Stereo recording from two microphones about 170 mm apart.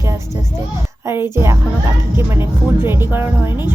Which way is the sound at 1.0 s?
15° right (ahead or behind).